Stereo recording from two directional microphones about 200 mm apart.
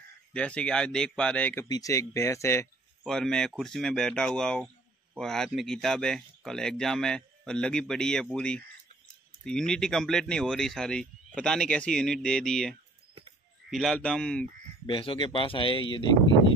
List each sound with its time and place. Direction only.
0.3 s speech: 5° left (ahead or behind)
3.0 s speech: 5° left (ahead or behind)
14.9 s speech: 25° left (ahead or behind)